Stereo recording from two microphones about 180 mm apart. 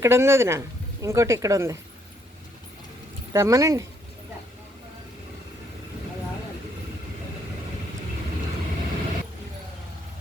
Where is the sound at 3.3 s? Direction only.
15° right (ahead or behind).